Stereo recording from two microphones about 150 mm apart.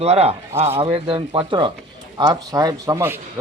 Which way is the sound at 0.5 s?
15° right (ahead or behind).